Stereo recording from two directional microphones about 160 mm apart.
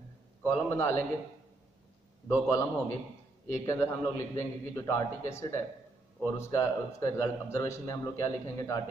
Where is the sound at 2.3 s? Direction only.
20° left (ahead or behind).